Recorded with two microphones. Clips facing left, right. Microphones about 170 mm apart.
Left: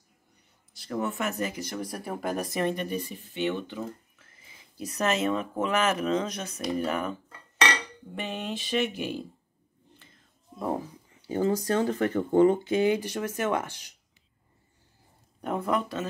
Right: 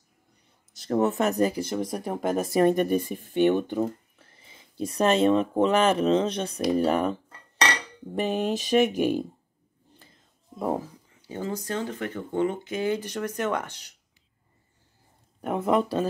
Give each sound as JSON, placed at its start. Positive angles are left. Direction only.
{"t": 0.8, "sound": "speech", "side_deg": -40}
{"t": 2.6, "sound": "speech", "side_deg": -50}
{"t": 4.2, "sound": "speech", "side_deg": -30}
{"t": 6.8, "sound": "cutlery", "side_deg": -35}
{"t": 8.1, "sound": "speech", "side_deg": -40}
{"t": 11.1, "sound": "speech", "side_deg": 30}
{"t": 12.8, "sound": "speech", "side_deg": 10}
{"t": 15.6, "sound": "speech", "side_deg": -30}